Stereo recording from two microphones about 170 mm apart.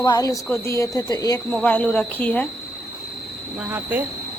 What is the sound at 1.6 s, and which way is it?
Speech, 10° left (ahead or behind).